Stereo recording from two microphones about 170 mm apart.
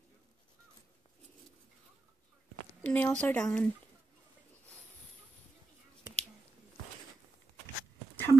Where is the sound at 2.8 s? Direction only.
10° left (ahead or behind).